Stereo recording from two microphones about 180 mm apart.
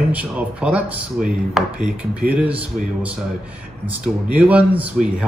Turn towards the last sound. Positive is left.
turn(degrees=-10)  # may be behind; listen again after turning